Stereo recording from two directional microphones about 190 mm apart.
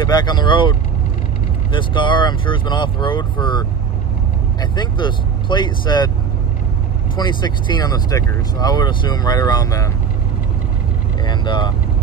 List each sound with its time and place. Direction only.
0.1 s speech: 20° left (ahead or behind)
7.2 s speech: 20° left (ahead or behind)
11.2 s speech: 25° left (ahead or behind)